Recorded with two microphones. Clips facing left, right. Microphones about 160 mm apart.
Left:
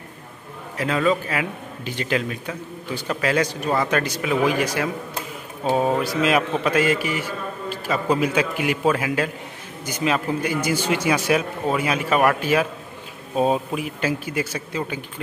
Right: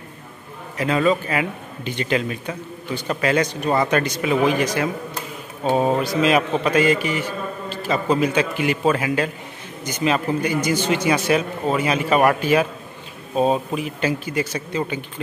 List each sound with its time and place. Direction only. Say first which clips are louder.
0.7 s a man's voice: right 2 dB; centre (ahead or behind)
13.7 s a man's voice: right 2 dB; 5° left (ahead or behind)